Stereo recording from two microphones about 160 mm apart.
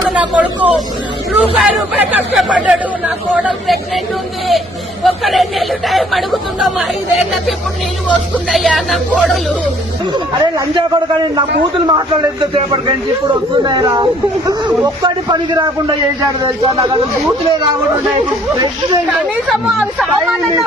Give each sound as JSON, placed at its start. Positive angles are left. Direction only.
{"t": 0.1, "sound": "speech", "side_deg": -10}
{"t": 5.0, "sound": "speech", "side_deg": 0}
{"t": 10.1, "sound": "a man's voice", "side_deg": -30}
{"t": 19.5, "sound": "speech", "side_deg": 0}